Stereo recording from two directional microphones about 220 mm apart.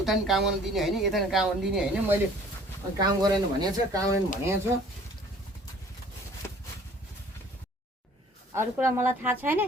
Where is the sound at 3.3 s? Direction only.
15° right (ahead or behind).